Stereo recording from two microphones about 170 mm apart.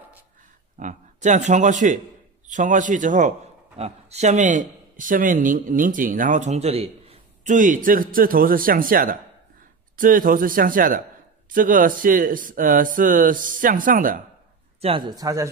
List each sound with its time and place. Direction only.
0.7 s a man's voice: 45° right (ahead or behind)
14.8 s speech: 30° right (ahead or behind)